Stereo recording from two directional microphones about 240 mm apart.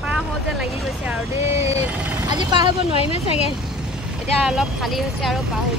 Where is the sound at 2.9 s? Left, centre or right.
Left.